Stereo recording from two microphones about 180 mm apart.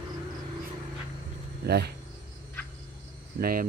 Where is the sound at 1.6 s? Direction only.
65° right (ahead or behind).